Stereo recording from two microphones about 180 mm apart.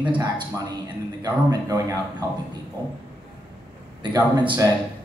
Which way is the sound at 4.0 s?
25° right (ahead or behind).